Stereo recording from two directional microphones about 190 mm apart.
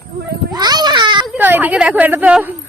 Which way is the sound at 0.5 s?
20° right (ahead or behind).